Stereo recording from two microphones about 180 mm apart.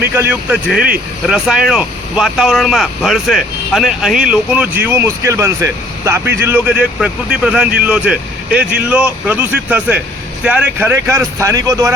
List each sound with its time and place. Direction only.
0.1 s speech: 10° right (ahead or behind)